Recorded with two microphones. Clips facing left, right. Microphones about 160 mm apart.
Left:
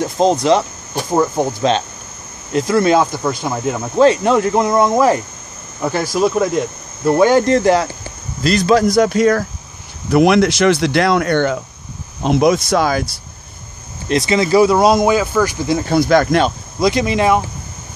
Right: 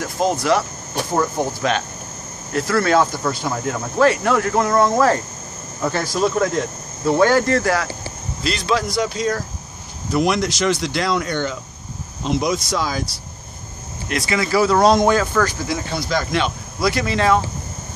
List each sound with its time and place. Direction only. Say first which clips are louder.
0.0 s speech: left 6 dB; 25° left (ahead or behind)
8.5 s speech: left 8 dB; 45° left (ahead or behind)
14.0 s speech: left 6 dB; 25° left (ahead or behind)
15.9 s speech: left 11 dB; 55° left (ahead or behind)
16.8 s speech: left 4 dB; 20° left (ahead or behind)